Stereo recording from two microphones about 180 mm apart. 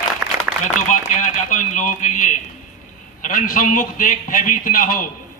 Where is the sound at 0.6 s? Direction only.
45° left (ahead or behind).